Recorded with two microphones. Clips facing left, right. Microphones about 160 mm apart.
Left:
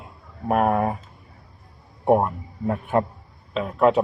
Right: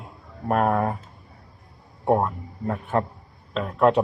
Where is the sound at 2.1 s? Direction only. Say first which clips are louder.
Left 3 dB; 10° left (ahead or behind).